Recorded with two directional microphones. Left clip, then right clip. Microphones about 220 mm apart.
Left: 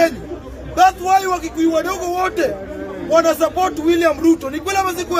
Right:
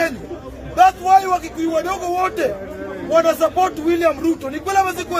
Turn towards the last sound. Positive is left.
turn(degrees=5)  # may be behind; listen again after turning